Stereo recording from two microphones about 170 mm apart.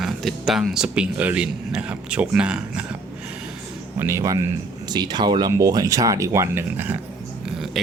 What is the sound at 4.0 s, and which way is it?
Speech, 15° right (ahead or behind).